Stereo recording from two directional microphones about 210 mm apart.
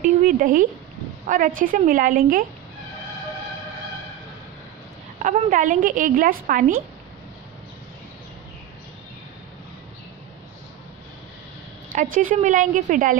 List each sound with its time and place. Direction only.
0.0 s a woman's voice: 40° right (ahead or behind)
5.2 s a woman's voice: 35° right (ahead or behind)
11.9 s a woman's voice: 40° right (ahead or behind)